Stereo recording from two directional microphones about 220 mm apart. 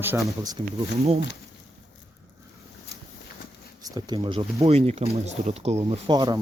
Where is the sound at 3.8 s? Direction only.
15° right (ahead or behind).